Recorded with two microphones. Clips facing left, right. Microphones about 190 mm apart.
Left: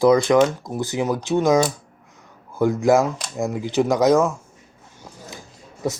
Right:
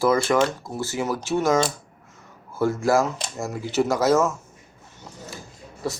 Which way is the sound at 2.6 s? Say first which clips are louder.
Left 4 dB; 15° left (ahead or behind).